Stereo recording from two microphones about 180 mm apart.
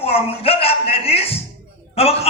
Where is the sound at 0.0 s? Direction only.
35° left (ahead or behind).